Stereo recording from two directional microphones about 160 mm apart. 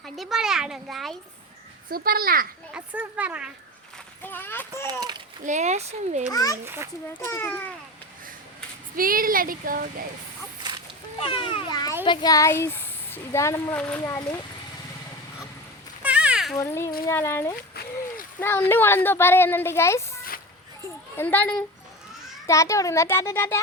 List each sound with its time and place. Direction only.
0.0 s a sound: centre (ahead or behind)
1.9 s a child's voice: 65° right (ahead or behind)
2.7 s speech: 10° right (ahead or behind)
4.2 s speech: 10° left (ahead or behind)
4.9 s a child's voice: 25° right (ahead or behind)
5.5 s speech: 45° right (ahead or behind)
6.3 s a child's voice: 20° left (ahead or behind)
9.0 s speech: 65° right (ahead or behind)
11.2 s a child's voice: 35° left (ahead or behind)
16.0 s a sound: 5° right (ahead or behind)
16.6 s speech: 15° left (ahead or behind)